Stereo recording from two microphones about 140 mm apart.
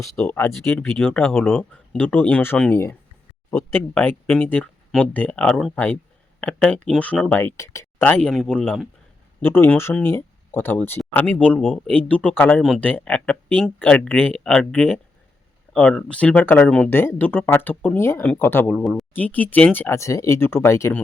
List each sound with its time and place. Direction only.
0.2 s speech: 10° left (ahead or behind)
8.0 s speech: 10° left (ahead or behind)